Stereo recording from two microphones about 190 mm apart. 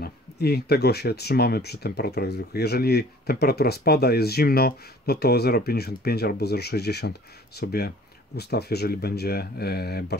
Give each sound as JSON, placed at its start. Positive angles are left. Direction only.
{"t": 0.0, "sound": "speech", "side_deg": 55}